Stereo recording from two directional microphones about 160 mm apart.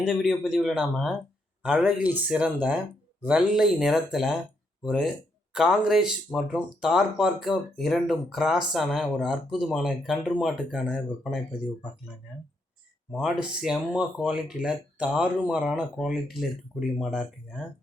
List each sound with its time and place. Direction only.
0.0 s speech: centre (ahead or behind)
13.1 s speech: centre (ahead or behind)